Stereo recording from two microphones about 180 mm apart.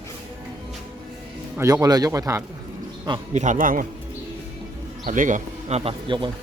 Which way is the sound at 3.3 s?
40° right (ahead or behind).